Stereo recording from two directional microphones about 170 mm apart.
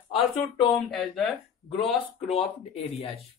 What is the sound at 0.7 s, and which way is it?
Speech, centre (ahead or behind).